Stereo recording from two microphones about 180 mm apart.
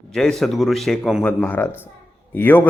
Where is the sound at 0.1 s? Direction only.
Centre (ahead or behind).